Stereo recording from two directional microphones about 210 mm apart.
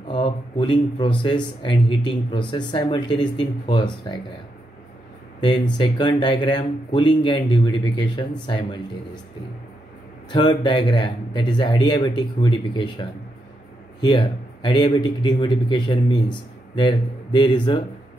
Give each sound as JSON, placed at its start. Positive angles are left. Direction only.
{"t": 0.1, "sound": "speech", "side_deg": 20}
{"t": 5.8, "sound": "speech", "side_deg": 20}
{"t": 10.3, "sound": "speech", "side_deg": 20}
{"t": 14.0, "sound": "speech", "side_deg": 20}